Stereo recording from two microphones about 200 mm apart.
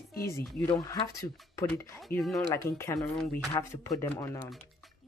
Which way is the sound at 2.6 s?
15° left (ahead or behind).